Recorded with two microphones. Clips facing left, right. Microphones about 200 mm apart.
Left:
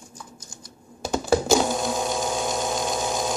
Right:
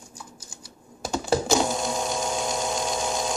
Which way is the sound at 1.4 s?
Centre (ahead or behind).